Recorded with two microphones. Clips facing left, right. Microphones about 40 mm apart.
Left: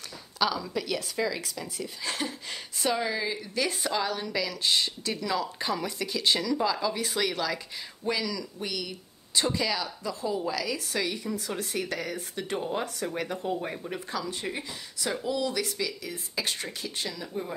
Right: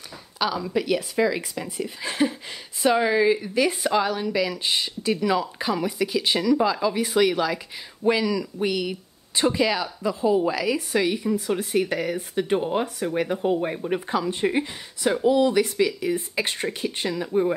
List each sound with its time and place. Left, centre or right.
0.4 s speech: centre; by 17.6 s right